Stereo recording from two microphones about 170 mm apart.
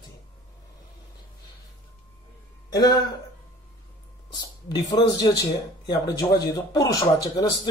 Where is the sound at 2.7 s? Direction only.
20° left (ahead or behind).